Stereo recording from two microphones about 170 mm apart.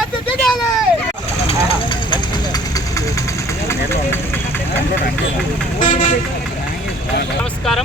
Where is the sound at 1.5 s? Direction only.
30° left (ahead or behind).